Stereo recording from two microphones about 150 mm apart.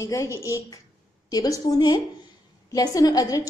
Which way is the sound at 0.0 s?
20° left (ahead or behind).